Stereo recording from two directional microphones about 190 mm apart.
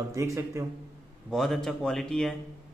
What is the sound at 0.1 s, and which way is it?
Speech, 15° right (ahead or behind).